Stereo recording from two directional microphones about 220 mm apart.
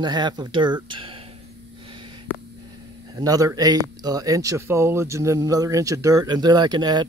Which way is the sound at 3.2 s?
15° right (ahead or behind).